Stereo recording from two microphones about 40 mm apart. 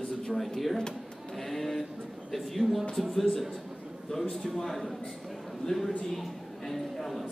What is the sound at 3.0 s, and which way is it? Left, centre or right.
A man's voice, centre.